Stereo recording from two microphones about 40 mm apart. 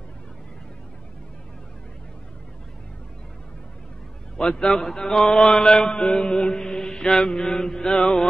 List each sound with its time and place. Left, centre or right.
4.4 s mantra: centre